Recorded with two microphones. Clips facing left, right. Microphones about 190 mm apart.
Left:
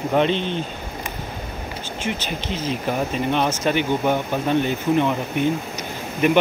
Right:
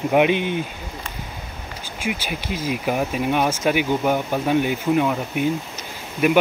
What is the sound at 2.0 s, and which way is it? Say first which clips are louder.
Speech: right 1 dB; 10° right (ahead or behind).